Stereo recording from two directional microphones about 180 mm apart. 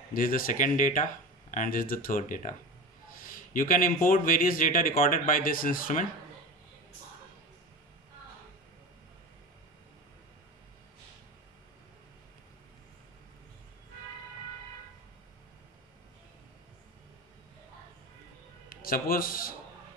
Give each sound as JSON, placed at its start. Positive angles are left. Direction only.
{"t": 0.1, "sound": "speech", "side_deg": 50}
{"t": 18.7, "sound": "a man's voice", "side_deg": 55}